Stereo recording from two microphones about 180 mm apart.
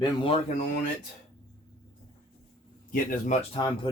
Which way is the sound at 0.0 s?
30° left (ahead or behind).